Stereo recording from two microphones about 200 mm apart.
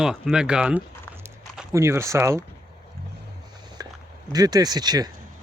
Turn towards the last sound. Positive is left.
turn(degrees=-20)  # may be behind; listen again after turning